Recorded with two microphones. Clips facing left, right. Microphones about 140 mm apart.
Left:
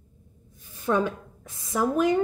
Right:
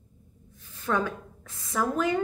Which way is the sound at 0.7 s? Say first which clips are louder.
Left 3 dB; 20° left (ahead or behind).